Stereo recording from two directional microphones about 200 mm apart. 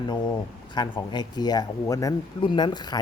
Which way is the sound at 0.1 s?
20° left (ahead or behind).